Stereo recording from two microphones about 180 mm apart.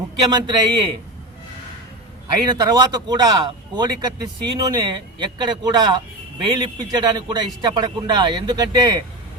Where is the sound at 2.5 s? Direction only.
25° right (ahead or behind).